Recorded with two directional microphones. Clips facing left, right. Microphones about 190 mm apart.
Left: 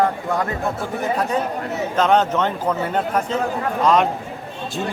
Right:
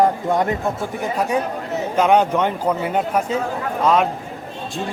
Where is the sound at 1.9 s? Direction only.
10° right (ahead or behind).